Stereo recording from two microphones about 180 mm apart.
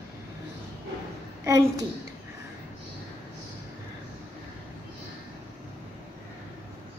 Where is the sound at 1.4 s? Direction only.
20° right (ahead or behind).